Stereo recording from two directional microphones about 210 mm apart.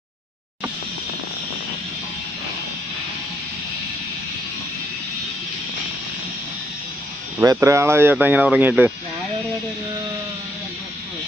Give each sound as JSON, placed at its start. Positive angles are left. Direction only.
{"t": 7.3, "sound": "speech", "side_deg": -15}